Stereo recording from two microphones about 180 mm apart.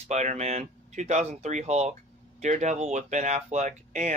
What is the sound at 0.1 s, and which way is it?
Speech, 40° right (ahead or behind).